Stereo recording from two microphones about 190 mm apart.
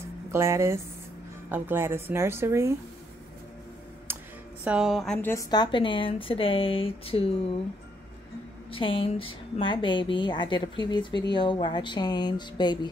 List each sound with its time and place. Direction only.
0.3 s speech: 15° right (ahead or behind)
4.6 s a woman's voice: 5° right (ahead or behind); by 7.3 s 30° left (ahead or behind)
8.7 s a woman's voice: 25° left (ahead or behind)